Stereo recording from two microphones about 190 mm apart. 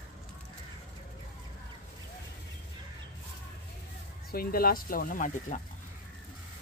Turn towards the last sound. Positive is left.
turn(degrees=45)  # may be behind; listen again after turning